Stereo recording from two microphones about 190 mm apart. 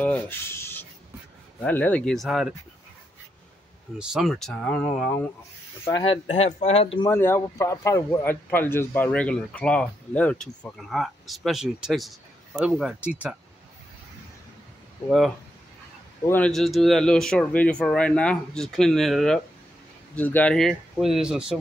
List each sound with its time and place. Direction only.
0.0 s a man's voice: 10° left (ahead or behind)
4.0 s a man's voice: centre (ahead or behind)
5.9 s speech: 25° left (ahead or behind)
7.1 s a man's voice: 15° left (ahead or behind); by 13.4 s 5° right (ahead or behind)
15.0 s a man's voice: centre (ahead or behind)